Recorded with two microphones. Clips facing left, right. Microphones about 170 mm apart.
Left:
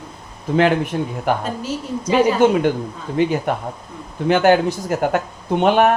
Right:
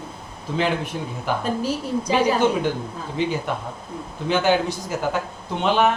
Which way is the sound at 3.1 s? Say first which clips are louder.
Left 6 dB; 55° left (ahead or behind).